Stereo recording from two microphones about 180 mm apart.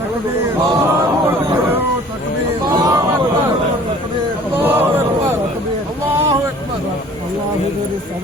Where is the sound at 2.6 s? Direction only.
20° right (ahead or behind).